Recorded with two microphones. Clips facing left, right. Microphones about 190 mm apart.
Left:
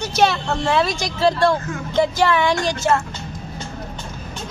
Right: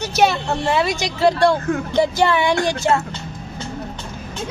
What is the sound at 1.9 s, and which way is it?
Speech, 20° right (ahead or behind).